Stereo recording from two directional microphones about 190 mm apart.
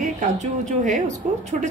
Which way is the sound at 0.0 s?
40° right (ahead or behind).